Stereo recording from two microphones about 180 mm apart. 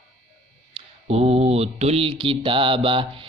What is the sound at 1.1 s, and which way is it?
Mantra, 35° right (ahead or behind).